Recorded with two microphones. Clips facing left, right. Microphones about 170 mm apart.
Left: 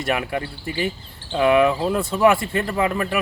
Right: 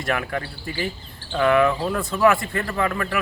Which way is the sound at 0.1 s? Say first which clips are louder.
Left 1 dB; 15° left (ahead or behind).